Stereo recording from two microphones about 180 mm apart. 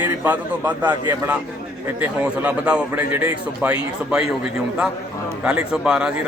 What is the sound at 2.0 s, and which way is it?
A man's voice, 10° right (ahead or behind).